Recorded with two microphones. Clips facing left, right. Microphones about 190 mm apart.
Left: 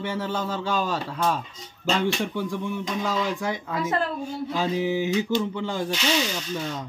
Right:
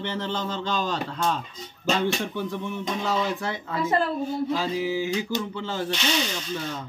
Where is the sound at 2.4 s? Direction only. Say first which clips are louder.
Left 2 dB; 10° left (ahead or behind).